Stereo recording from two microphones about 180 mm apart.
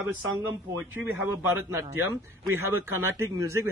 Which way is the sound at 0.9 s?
10° right (ahead or behind).